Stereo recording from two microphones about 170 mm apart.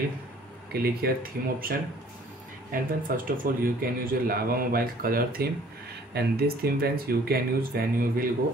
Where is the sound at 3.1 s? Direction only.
55° right (ahead or behind).